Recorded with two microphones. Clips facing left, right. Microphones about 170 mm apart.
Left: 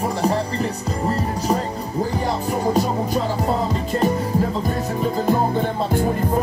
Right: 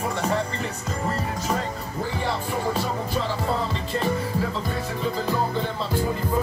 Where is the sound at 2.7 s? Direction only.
40° left (ahead or behind).